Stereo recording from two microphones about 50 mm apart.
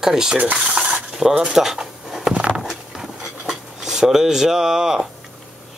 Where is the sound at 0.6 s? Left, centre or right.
Centre.